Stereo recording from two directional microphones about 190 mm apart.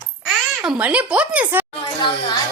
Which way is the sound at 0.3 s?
5° right (ahead or behind).